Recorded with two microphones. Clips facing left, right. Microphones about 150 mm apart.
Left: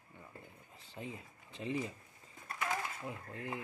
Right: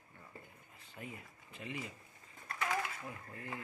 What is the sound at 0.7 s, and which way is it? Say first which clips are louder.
Speech: left 3 dB; 30° left (ahead or behind).